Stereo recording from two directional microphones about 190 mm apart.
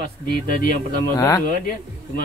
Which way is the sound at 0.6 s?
50° left (ahead or behind).